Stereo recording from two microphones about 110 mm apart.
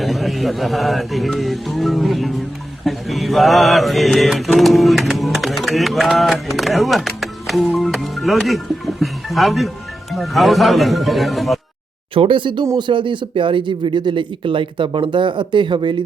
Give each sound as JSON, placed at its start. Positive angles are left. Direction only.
{"t": 0.0, "sound": "music", "side_deg": 0}
{"t": 12.1, "sound": "speech", "side_deg": -50}